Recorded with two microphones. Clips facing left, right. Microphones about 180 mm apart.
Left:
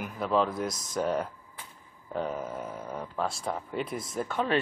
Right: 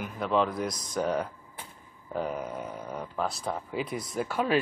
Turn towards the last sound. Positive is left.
turn(degrees=-5)  # may be behind; listen again after turning